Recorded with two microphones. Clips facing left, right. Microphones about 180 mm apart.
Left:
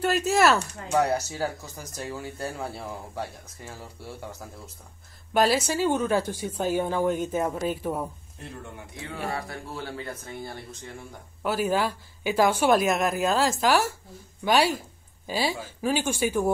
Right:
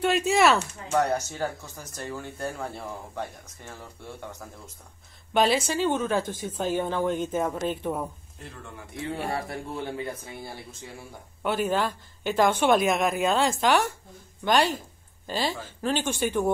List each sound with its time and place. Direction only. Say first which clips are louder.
0.0 s speech: even; centre (ahead or behind)
9.3 s a man's voice: right 2 dB; 25° right (ahead or behind); by 11.1 s 10° right (ahead or behind)
11.4 s speech: left 1 dB; 5° left (ahead or behind)